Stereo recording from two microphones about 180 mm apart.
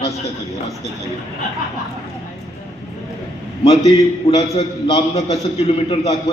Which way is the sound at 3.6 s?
35° left (ahead or behind).